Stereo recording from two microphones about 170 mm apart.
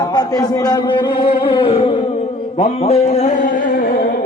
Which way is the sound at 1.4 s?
30° left (ahead or behind).